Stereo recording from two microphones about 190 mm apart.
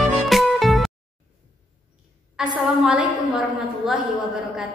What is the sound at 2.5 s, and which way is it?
Speech, 5° right (ahead or behind).